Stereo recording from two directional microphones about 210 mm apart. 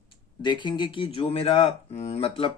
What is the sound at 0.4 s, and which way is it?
Speech, 20° left (ahead or behind).